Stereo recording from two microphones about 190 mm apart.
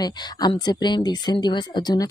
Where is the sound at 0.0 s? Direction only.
20° left (ahead or behind).